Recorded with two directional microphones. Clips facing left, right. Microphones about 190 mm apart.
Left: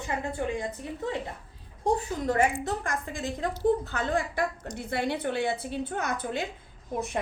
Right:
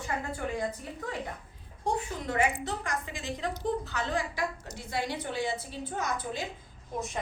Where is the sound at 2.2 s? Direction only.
40° left (ahead or behind); by 6.5 s 60° left (ahead or behind).